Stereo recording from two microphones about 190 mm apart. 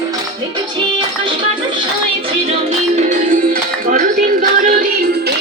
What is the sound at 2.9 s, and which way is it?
Music, 40° right (ahead or behind).